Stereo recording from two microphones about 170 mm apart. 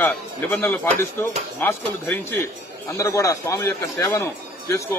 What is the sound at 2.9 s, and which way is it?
Speech, 15° left (ahead or behind).